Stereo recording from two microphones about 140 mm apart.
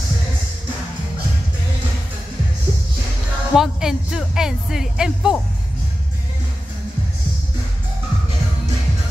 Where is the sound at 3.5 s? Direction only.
5° right (ahead or behind).